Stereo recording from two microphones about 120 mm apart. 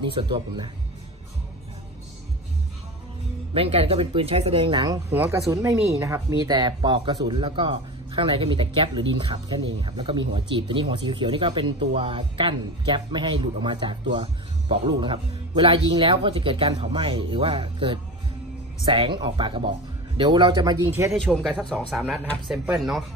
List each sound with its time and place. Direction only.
0.0 s speech: 45° right (ahead or behind)
3.5 s speech: 55° right (ahead or behind)
5.1 s a woman's voice: 15° right (ahead or behind)
5.5 s a woman's voice: 25° right (ahead or behind)
6.5 s speech: 40° right (ahead or behind)
20.8 s a woman's voice: 25° right (ahead or behind)
21.1 s speech: centre (ahead or behind)
22.5 s speech: 5° right (ahead or behind)